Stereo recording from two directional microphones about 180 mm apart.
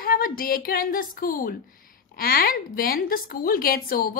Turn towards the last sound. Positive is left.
turn(degrees=55)  # may be behind; listen again after turning